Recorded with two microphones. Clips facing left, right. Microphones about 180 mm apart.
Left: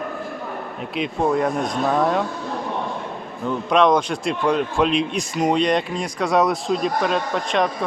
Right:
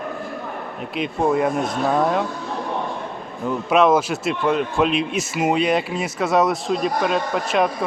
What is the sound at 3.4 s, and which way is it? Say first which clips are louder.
A man's voice: right 1 dB; 5° right (ahead or behind).